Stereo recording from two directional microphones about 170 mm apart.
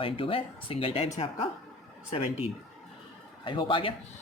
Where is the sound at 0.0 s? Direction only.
30° left (ahead or behind).